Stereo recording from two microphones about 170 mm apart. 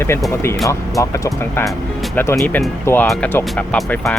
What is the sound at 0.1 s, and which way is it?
Speech, 15° left (ahead or behind).